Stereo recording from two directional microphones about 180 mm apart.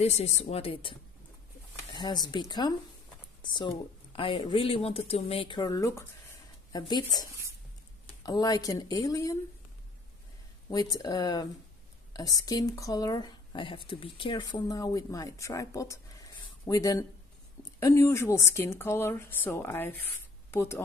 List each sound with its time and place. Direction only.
0.0 s speech: 35° left (ahead or behind); by 9.4 s 20° left (ahead or behind)
10.7 s speech: 20° left (ahead or behind)